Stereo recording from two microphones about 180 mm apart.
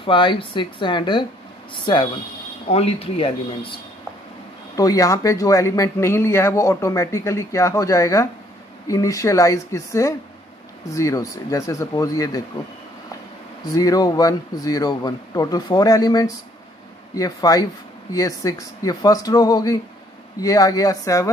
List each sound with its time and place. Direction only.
0.0 s speech: 25° left (ahead or behind)
4.7 s speech: 20° left (ahead or behind)
13.7 s speech: 20° left (ahead or behind)